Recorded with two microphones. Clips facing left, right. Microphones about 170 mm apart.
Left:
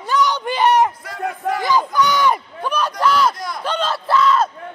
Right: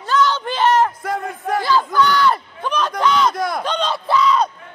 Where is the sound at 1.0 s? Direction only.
50° right (ahead or behind).